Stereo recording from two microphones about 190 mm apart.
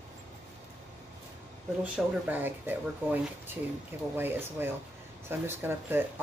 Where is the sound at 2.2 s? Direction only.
10° right (ahead or behind).